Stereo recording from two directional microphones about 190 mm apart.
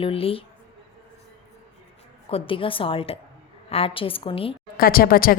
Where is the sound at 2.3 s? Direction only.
30° left (ahead or behind).